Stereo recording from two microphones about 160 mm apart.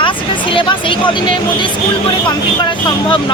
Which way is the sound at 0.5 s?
30° left (ahead or behind).